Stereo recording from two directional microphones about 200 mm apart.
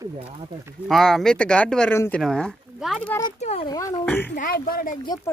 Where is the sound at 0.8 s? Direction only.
Centre (ahead or behind).